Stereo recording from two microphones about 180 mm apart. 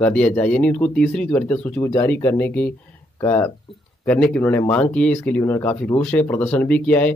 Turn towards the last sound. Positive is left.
turn(degrees=5)  # may be behind; listen again after turning